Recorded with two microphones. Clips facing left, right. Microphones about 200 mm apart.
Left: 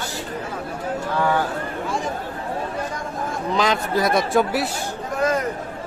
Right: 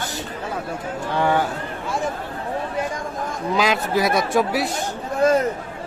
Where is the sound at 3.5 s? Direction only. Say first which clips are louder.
Right 1 dB; 5° right (ahead or behind).